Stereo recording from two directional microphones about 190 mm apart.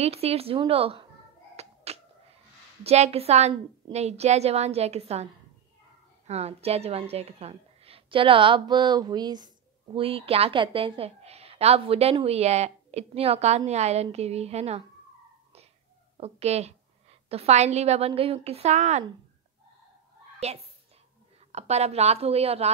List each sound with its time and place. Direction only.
0.0 s a woman's voice: 30° right (ahead or behind)
1.6 s cat: 35° right (ahead or behind)
2.8 s a woman's voice: 35° right (ahead or behind)
16.2 s a woman's voice: 35° right (ahead or behind)
20.4 s a woman's voice: 35° right (ahead or behind)